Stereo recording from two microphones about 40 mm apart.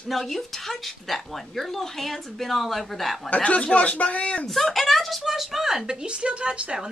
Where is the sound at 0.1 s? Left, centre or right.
Centre.